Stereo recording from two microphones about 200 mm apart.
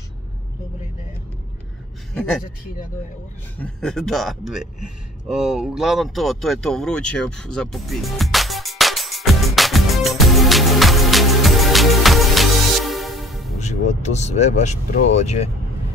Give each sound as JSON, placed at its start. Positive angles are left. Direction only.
{"t": 3.5, "sound": "a man's voice", "side_deg": 5}
{"t": 5.3, "sound": "a sound", "side_deg": 0}
{"t": 13.6, "sound": "speech", "side_deg": 35}